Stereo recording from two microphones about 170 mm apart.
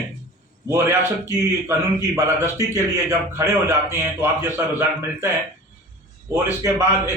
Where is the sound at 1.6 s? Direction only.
15° right (ahead or behind).